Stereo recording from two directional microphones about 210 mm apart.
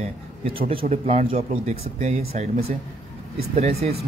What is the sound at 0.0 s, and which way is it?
Speech, 30° right (ahead or behind).